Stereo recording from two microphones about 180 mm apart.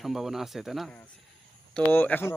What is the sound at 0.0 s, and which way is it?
Speech, centre (ahead or behind).